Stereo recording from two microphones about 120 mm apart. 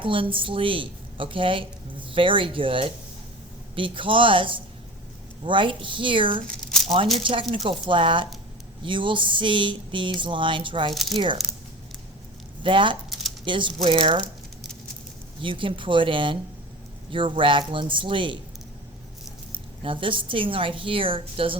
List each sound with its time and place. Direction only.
0.0 s speech: 45° right (ahead or behind)
12.6 s speech: 45° right (ahead or behind)
15.4 s speech: 45° right (ahead or behind)
19.8 s speech: 45° right (ahead or behind)